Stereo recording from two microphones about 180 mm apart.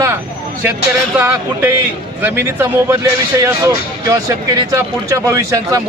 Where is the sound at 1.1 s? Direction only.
10° right (ahead or behind).